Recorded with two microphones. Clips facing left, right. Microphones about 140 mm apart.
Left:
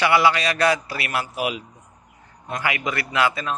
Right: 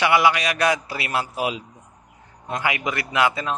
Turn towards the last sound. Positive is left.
turn(degrees=-20)  # may be behind; listen again after turning